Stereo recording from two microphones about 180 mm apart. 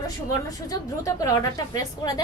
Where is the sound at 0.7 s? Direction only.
20° left (ahead or behind).